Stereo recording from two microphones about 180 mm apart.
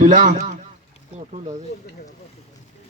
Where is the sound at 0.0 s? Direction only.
45° right (ahead or behind).